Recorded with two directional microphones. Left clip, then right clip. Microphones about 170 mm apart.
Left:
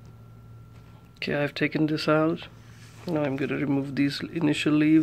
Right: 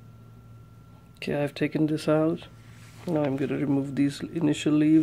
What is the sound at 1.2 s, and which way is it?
Speech, 10° right (ahead or behind).